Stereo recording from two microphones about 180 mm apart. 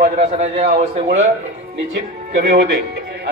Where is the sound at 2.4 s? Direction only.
70° right (ahead or behind).